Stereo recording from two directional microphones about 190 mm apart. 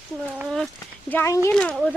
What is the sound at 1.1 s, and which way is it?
Speech, 15° left (ahead or behind).